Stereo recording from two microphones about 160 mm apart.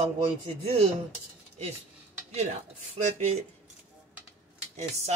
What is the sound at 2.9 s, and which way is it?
Speech, 40° right (ahead or behind).